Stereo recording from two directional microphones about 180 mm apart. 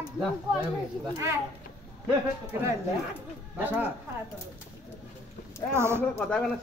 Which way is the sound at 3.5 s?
10° right (ahead or behind).